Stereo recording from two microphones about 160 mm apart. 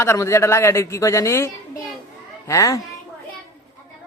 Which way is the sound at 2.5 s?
20° left (ahead or behind).